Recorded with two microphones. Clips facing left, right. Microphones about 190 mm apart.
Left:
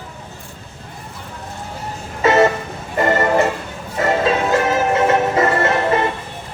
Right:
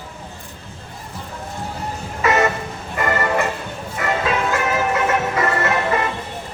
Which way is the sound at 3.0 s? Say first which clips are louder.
Left 5 dB; 30° left (ahead or behind).